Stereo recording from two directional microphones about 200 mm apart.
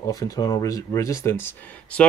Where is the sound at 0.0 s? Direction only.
20° left (ahead or behind).